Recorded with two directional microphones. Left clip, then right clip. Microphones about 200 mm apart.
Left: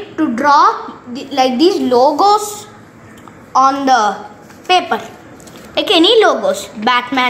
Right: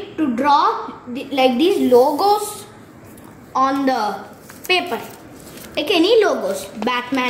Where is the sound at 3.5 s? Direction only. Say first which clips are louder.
Left 7 dB; 10° left (ahead or behind).